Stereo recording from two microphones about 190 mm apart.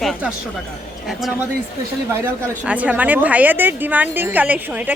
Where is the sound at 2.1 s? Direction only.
10° right (ahead or behind).